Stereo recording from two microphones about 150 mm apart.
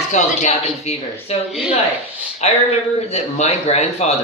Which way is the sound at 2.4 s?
45° left (ahead or behind).